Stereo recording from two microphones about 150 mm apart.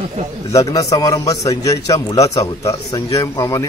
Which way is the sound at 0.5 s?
25° left (ahead or behind).